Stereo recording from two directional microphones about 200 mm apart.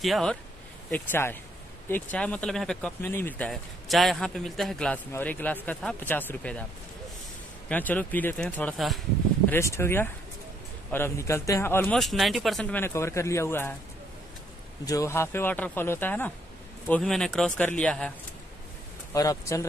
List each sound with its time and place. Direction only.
0.0 s speech: centre (ahead or behind)
7.6 s speech: 10° left (ahead or behind)
9.5 s speech: 15° left (ahead or behind)
14.9 s speech: 15° left (ahead or behind)
19.1 s speech: 15° left (ahead or behind)